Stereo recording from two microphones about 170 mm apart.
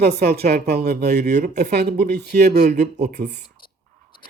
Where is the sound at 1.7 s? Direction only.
70° right (ahead or behind).